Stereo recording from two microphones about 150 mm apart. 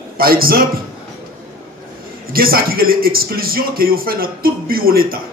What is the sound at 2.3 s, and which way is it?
Speech, 80° right.